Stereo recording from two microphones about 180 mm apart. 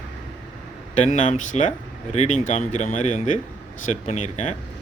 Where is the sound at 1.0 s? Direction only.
40° left (ahead or behind).